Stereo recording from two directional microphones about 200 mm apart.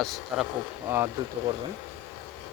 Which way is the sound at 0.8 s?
15° right (ahead or behind).